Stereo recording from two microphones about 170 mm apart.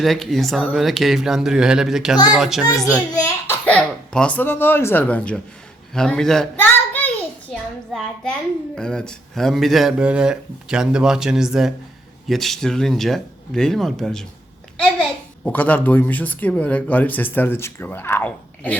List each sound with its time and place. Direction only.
0.0 s a child's voice: centre (ahead or behind)
3.1 s a child's voice: 20° left (ahead or behind)
3.7 s a child's voice: 5° left (ahead or behind)
6.6 s child singing: 10° left (ahead or behind)
7.9 s a child's voice: 5° left (ahead or behind)
15.4 s speech: 10° left (ahead or behind)